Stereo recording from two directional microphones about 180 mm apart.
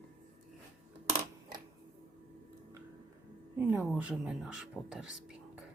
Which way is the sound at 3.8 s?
Centre (ahead or behind).